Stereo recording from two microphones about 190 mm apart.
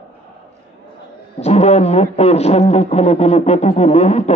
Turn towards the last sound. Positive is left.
turn(degrees=35)  # may be behind; listen again after turning